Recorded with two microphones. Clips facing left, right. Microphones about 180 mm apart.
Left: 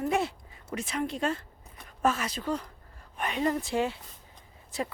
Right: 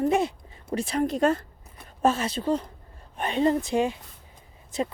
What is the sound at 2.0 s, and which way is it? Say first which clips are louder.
Speech: right 5 dB; 30° right (ahead or behind).